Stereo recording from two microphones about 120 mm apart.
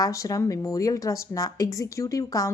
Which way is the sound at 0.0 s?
25° left (ahead or behind).